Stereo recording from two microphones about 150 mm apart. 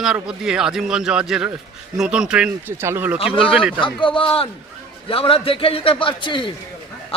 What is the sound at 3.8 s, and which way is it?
A man's voice, 35° left (ahead or behind).